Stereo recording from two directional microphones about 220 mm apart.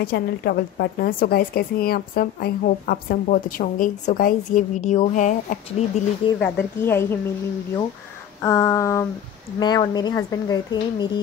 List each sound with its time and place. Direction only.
0.0 s a woman's voice: 45° left (ahead or behind)
6.4 s a woman's voice: 10° left (ahead or behind)
8.4 s a woman's voice: 15° left (ahead or behind)